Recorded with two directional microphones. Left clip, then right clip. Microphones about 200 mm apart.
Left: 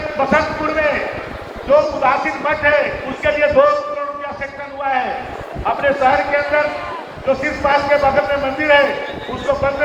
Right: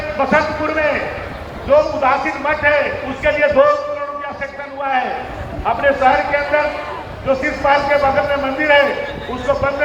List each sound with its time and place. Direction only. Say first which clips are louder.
0.2 s a man's voice: even; 50° left (ahead or behind)
4.8 s a man's voice: even; 45° left (ahead or behind)